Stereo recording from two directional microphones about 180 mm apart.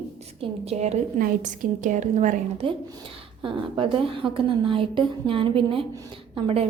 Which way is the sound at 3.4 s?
30° right (ahead or behind).